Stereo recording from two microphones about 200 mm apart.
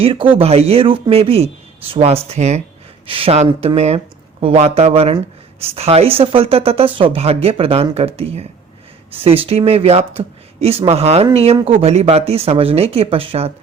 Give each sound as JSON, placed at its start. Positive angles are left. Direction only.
{"t": 0.0, "sound": "speech", "side_deg": -25}